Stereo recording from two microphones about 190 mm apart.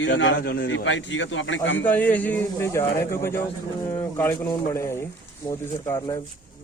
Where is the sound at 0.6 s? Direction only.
80° left.